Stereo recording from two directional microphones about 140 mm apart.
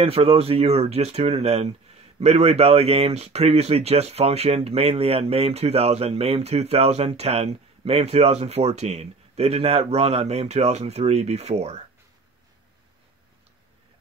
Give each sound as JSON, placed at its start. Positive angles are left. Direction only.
{"t": 0.0, "sound": "speech", "side_deg": -45}